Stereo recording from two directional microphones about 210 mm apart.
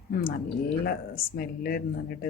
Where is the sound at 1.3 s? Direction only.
45° left (ahead or behind).